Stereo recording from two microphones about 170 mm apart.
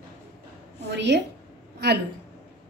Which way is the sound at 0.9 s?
90° right.